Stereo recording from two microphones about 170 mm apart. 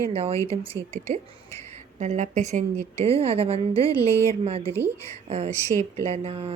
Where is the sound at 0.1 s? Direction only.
35° right (ahead or behind).